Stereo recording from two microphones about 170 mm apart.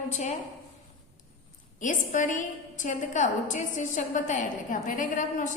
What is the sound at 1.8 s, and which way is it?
A woman's voice, 50° left (ahead or behind).